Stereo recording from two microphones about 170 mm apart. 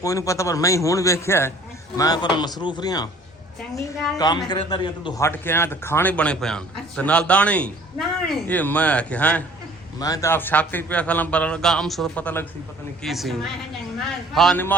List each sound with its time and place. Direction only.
0.0 s a man's voice: 20° left (ahead or behind)
4.4 s speech: 25° left (ahead or behind)
5.2 s a man's voice: 15° left (ahead or behind)
10.0 s a man's voice: 20° left (ahead or behind)
13.0 s a woman's voice: centre (ahead or behind)
14.3 s a woman's voice: centre (ahead or behind)